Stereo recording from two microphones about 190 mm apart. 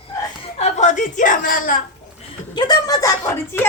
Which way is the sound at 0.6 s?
40° left (ahead or behind).